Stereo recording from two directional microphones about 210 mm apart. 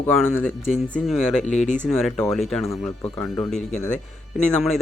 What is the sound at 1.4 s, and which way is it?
Speech, 35° left (ahead or behind).